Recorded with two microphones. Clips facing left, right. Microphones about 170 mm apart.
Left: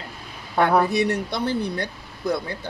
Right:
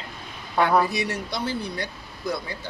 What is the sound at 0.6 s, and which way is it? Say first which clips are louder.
Speech: left 3 dB; 60° left (ahead or behind).